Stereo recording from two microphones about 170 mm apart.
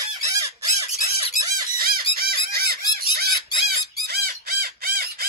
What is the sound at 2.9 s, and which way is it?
Crow, 65° right (ahead or behind).